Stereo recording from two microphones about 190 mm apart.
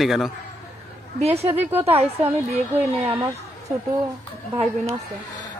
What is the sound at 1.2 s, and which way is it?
Speech, 35° right (ahead or behind).